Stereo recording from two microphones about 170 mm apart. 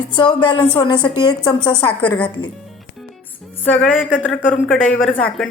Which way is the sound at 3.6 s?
10° left (ahead or behind).